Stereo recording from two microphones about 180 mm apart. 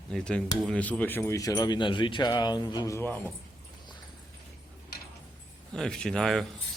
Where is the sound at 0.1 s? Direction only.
5° left (ahead or behind).